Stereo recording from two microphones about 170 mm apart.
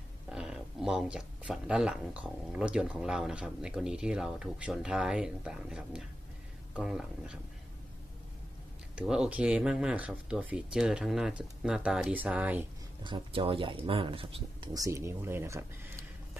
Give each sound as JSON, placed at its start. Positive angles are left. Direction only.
{"t": 0.3, "sound": "speech", "side_deg": -5}
{"t": 8.9, "sound": "speech", "side_deg": -5}
{"t": 13.0, "sound": "speech", "side_deg": -30}